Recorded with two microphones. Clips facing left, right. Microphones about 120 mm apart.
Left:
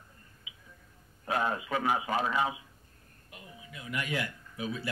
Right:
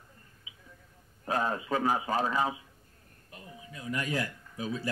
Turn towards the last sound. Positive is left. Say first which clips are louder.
# right 1 dB
turn(degrees=-35)  # may be behind; listen again after turning